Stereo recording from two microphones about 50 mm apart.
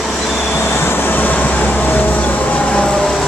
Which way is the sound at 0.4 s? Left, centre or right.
Left.